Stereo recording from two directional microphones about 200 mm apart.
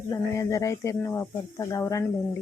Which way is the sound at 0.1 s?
15° left (ahead or behind).